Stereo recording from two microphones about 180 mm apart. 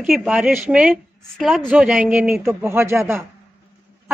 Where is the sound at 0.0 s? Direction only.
Centre (ahead or behind).